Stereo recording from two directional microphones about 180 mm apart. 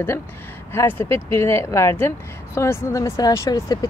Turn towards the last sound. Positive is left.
turn(degrees=20)  # may be behind; listen again after turning